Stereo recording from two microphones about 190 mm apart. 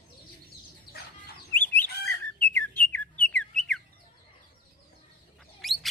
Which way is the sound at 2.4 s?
10° left (ahead or behind).